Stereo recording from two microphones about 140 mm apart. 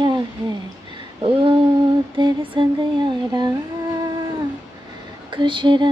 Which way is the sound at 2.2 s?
35° right (ahead or behind).